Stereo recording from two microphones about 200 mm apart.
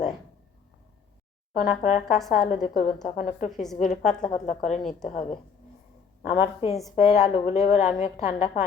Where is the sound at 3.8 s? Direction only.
35° left (ahead or behind).